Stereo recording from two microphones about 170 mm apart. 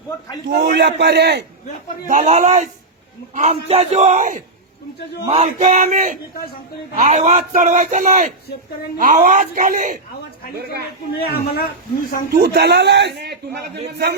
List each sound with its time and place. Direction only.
0.4 s a man's voice: 80° right
2.0 s a man's voice: 45° right (ahead or behind)
10.6 s a man's voice: 65° right (ahead or behind)
11.2 s speech: 65° left (ahead or behind)
12.3 s a man's voice: 70° right (ahead or behind)